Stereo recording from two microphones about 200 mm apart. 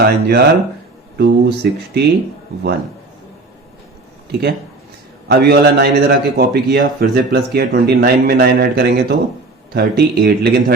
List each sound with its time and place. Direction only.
0.0 s a man's voice: 55° right (ahead or behind)
4.3 s a man's voice: 55° right (ahead or behind)